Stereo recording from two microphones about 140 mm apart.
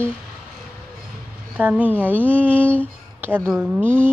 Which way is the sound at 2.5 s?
10° left (ahead or behind).